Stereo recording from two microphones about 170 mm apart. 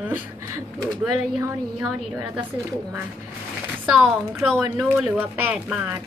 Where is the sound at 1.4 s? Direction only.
10° right (ahead or behind).